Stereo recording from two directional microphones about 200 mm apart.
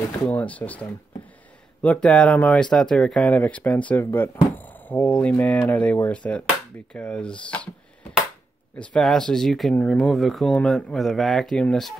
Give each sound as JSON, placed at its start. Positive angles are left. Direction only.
{"t": 0.2, "sound": "speech", "side_deg": 5}
{"t": 8.7, "sound": "speech", "side_deg": 5}